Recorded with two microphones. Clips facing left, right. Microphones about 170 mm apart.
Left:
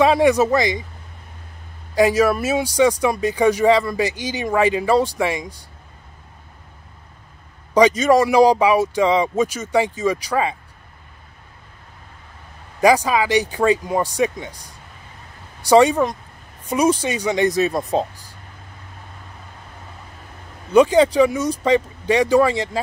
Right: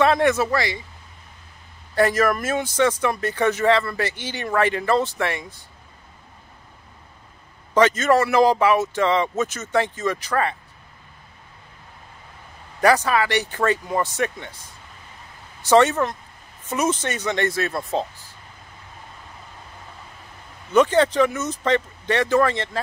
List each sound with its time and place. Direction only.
0.0 s speech: 10° left (ahead or behind)
2.0 s speech: 10° left (ahead or behind)
7.7 s speech: 15° left (ahead or behind)
12.8 s speech: 15° left (ahead or behind)
15.6 s speech: 10° left (ahead or behind)
20.7 s speech: 10° left (ahead or behind)